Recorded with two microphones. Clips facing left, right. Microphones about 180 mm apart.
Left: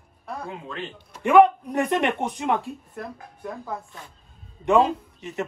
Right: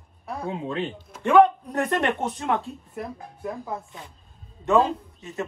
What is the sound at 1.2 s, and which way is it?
A man's voice, 15° left (ahead or behind).